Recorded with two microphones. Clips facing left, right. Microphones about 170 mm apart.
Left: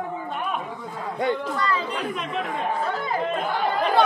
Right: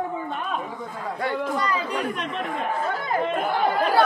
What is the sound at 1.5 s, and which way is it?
Speech, 15° right (ahead or behind).